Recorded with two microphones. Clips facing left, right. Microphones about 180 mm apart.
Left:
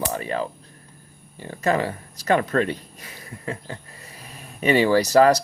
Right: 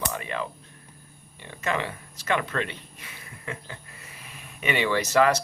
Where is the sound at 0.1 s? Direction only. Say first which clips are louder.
Left 5 dB; 35° left (ahead or behind).